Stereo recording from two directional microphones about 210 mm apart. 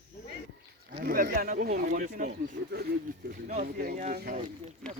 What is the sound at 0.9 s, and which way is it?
Speech, 45° right (ahead or behind).